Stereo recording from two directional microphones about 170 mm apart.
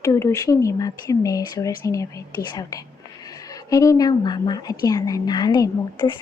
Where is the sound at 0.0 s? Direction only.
15° left (ahead or behind).